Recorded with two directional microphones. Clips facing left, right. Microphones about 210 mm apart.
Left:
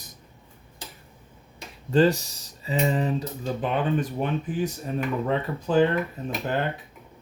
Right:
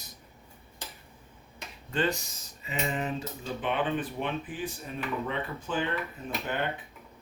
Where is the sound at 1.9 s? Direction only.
35° left (ahead or behind).